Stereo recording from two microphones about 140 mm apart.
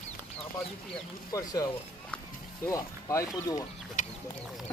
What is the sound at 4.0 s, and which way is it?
Duck, 65° left (ahead or behind).